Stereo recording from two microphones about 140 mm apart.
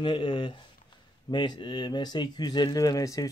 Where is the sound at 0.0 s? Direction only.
35° left (ahead or behind).